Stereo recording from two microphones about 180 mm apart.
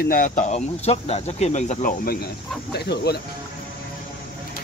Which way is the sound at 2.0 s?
60° left (ahead or behind).